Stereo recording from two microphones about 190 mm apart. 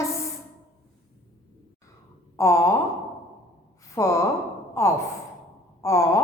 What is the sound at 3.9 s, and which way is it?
Sigh, 15° left (ahead or behind).